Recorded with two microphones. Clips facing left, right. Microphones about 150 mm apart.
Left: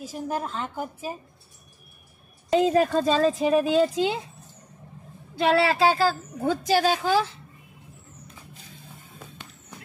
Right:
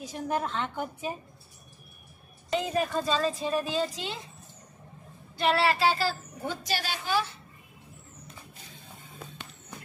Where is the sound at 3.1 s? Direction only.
50° left (ahead or behind).